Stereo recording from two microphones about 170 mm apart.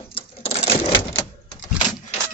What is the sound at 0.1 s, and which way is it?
Cash register, 35° left (ahead or behind).